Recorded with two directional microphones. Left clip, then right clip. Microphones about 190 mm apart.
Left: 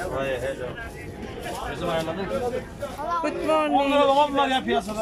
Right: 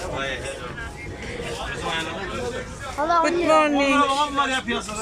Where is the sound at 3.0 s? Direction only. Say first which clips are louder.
Right 8 dB; 45° right (ahead or behind).